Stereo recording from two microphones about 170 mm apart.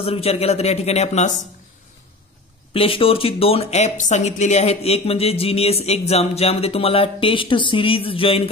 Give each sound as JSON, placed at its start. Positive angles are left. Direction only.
{"t": 0.0, "sound": "speech", "side_deg": 35}
{"t": 2.7, "sound": "speech", "side_deg": 35}